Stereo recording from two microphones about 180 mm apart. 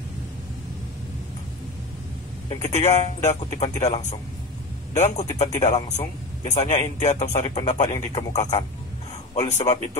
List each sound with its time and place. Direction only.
2.5 s a man's voice: 40° left (ahead or behind)
7.5 s speech: 25° left (ahead or behind)
9.3 s a man's voice: 40° left (ahead or behind)